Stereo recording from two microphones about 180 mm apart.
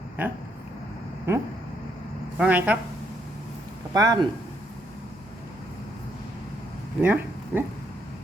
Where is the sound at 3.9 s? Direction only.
20° right (ahead or behind).